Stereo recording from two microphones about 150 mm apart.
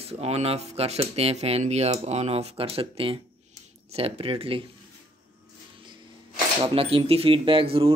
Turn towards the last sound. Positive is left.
turn(degrees=-40)  # may be behind; listen again after turning